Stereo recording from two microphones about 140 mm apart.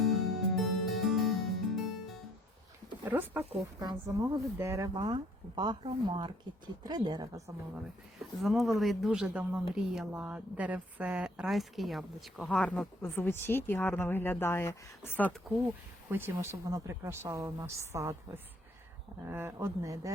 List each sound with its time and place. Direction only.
0.0 s music: centre (ahead or behind)
3.0 s a sound: 15° right (ahead or behind)
3.8 s speech: 25° right (ahead or behind)
8.2 s a woman's voice: centre (ahead or behind)
13.0 s a woman's voice: 15° left (ahead or behind)
16.0 s speech: 15° right (ahead or behind)
19.2 s speech: 15° right (ahead or behind)